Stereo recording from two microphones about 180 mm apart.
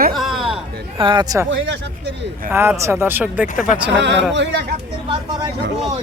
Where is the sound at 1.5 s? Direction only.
75° right (ahead or behind).